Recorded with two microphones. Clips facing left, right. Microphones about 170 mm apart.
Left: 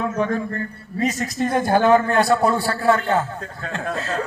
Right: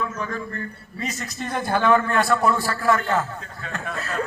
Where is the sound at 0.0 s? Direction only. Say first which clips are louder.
Left 7 dB; 55° left (ahead or behind).